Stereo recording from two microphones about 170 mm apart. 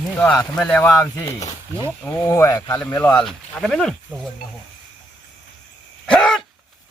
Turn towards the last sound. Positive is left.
turn(degrees=5)  # may be behind; listen again after turning